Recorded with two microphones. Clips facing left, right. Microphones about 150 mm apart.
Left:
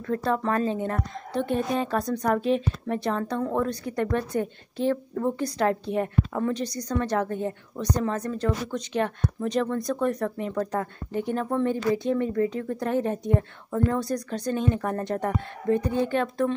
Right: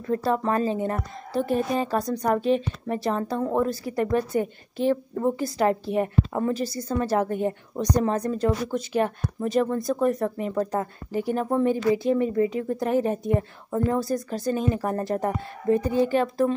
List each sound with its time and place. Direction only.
0.0 s a woman's voice: 5° right (ahead or behind)